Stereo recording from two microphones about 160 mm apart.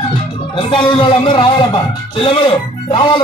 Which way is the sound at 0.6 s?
30° left (ahead or behind).